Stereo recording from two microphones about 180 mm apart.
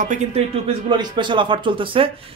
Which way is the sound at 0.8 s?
25° right (ahead or behind).